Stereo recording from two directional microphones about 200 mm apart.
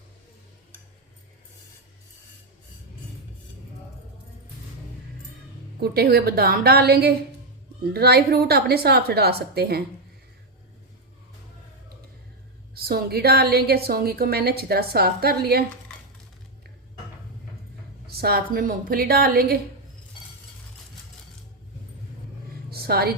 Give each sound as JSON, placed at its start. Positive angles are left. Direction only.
{"t": 5.8, "sound": "a woman's voice", "side_deg": -50}
{"t": 12.7, "sound": "a woman's voice", "side_deg": -50}
{"t": 18.2, "sound": "a woman's voice", "side_deg": -50}
{"t": 22.7, "sound": "a sound", "side_deg": -50}